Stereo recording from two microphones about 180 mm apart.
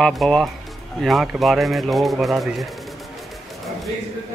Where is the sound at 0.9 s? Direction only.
Centre (ahead or behind).